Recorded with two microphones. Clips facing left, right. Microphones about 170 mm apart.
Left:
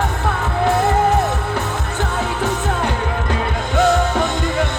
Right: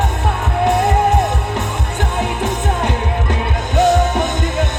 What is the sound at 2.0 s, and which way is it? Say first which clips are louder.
Music: right 2 dB; 20° right (ahead or behind).